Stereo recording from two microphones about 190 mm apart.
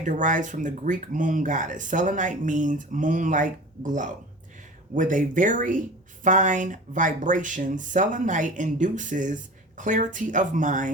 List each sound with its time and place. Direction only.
0.0 s speech: 40° right (ahead or behind)